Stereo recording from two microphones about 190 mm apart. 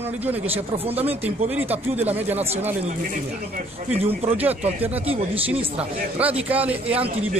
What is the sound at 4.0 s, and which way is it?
Speech, 30° right (ahead or behind).